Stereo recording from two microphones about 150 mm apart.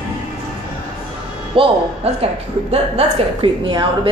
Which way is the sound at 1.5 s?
40° right (ahead or behind).